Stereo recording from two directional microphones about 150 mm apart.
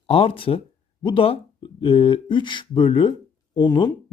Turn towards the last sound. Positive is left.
turn(degrees=30)  # may be behind; listen again after turning